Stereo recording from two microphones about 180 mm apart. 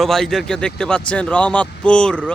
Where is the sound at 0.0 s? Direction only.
Centre (ahead or behind).